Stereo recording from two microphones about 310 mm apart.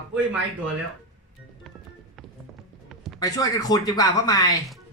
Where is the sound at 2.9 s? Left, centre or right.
Centre.